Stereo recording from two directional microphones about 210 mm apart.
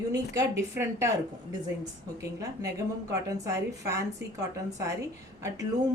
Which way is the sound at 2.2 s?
15° right (ahead or behind).